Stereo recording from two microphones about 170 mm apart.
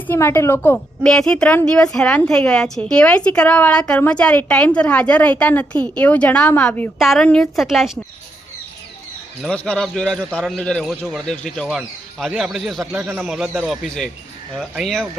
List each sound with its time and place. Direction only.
0.1 s a woman's voice: 15° left (ahead or behind); by 7.9 s centre (ahead or behind)
9.4 s speech: 5° left (ahead or behind)